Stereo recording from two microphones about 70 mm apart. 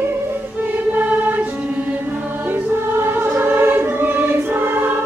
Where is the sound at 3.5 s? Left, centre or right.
Right.